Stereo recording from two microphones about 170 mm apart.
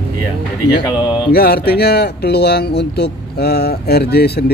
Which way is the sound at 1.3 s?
65° left (ahead or behind).